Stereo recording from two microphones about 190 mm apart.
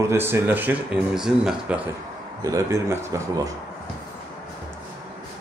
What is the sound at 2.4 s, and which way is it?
Speech, 15° right (ahead or behind).